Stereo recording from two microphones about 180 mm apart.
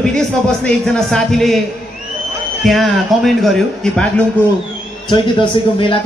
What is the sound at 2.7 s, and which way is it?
A man's voice, centre (ahead or behind).